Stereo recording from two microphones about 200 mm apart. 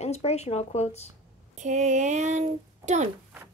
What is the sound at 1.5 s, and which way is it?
A child's voice, 35° right (ahead or behind).